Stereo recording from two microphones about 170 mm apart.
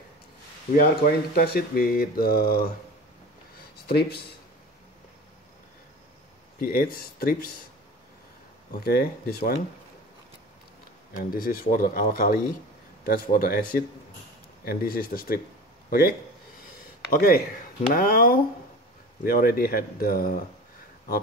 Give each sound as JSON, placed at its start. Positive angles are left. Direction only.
{"t": 0.7, "sound": "speech", "side_deg": 60}
{"t": 3.8, "sound": "speech", "side_deg": 70}
{"t": 6.6, "sound": "speech", "side_deg": 60}
{"t": 8.7, "sound": "speech", "side_deg": 65}
{"t": 11.3, "sound": "speech", "side_deg": 55}